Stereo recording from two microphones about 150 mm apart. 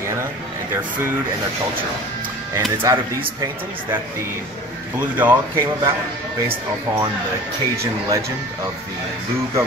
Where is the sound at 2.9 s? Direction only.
20° right (ahead or behind).